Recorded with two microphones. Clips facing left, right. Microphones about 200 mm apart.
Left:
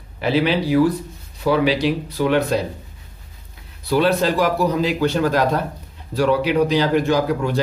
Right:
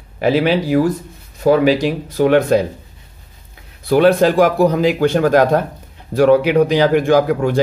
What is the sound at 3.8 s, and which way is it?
Speech, 55° right (ahead or behind).